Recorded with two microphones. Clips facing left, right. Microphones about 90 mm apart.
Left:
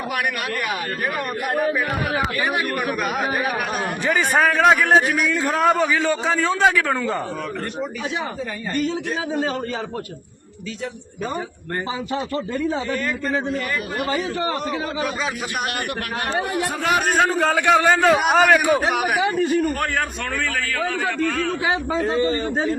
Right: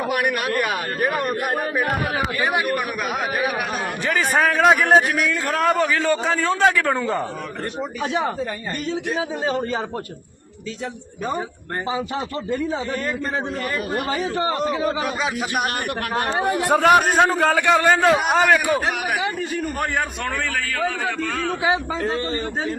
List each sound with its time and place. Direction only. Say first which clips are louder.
1.0 s a man's voice: right 4 dB; 35° right (ahead or behind)
2.6 s a man's voice: even; centre (ahead or behind)
9.0 s a man's voice: even; 20° right (ahead or behind)
12.9 s a man's voice: left 1 dB; 30° right (ahead or behind)
16.6 s a man's voice: right 10 dB; 45° right (ahead or behind)
17.1 s a man's voice: right 2 dB; 10° right (ahead or behind)
17.3 s a man's voice: even; centre (ahead or behind)
20.7 s a man's voice: left 1 dB; 5° right (ahead or behind)
21.9 s a man's voice: left 4 dB; 5° left (ahead or behind)